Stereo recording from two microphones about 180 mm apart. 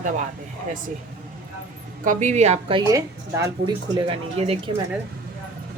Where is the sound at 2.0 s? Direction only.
45° right (ahead or behind).